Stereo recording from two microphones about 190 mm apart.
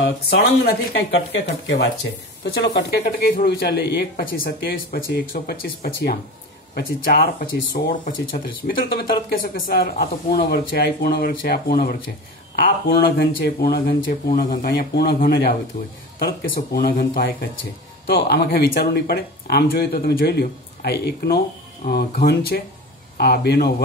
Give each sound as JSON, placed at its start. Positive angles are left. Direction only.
{"t": 0.0, "sound": "speech", "side_deg": 60}
{"t": 3.1, "sound": "speech", "side_deg": 50}